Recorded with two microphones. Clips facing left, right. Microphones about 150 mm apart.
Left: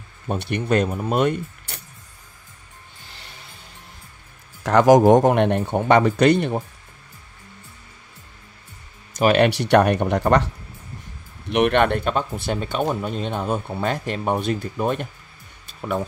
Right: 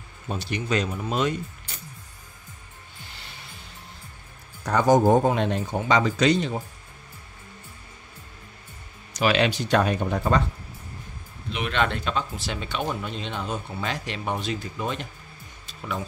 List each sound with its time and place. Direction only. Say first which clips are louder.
0.3 s a man's voice: left 5 dB; 60° left (ahead or behind)
4.6 s a man's voice: left 6 dB; 90° left; by 6.6 s 60° left (ahead or behind)
9.1 s a man's voice: left 5 dB; 50° left (ahead or behind)